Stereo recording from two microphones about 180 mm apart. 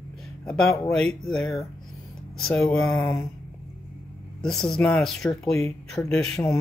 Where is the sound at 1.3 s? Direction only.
5° left (ahead or behind).